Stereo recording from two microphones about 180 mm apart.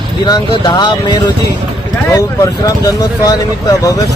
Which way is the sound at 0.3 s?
25° left (ahead or behind).